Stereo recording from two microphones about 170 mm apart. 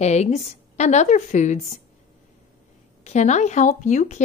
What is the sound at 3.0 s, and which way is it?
A woman's voice, 40° left (ahead or behind).